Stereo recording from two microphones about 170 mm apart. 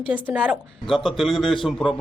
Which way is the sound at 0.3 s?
5° right (ahead or behind).